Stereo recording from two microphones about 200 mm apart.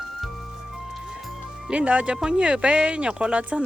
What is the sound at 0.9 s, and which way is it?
Speech, centre (ahead or behind).